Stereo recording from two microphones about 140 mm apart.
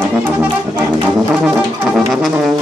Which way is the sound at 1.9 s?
Centre (ahead or behind).